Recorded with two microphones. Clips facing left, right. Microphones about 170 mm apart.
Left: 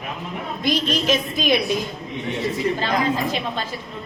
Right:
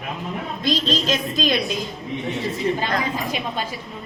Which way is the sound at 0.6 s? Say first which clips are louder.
Left 1 dB; 15° left (ahead or behind).